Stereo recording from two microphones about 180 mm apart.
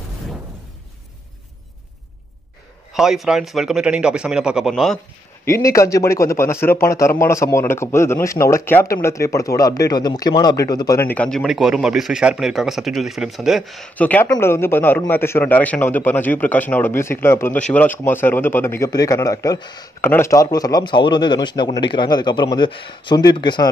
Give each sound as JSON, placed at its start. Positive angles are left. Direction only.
{"t": 2.9, "sound": "speech", "side_deg": 0}
{"t": 5.4, "sound": "a man's voice", "side_deg": 15}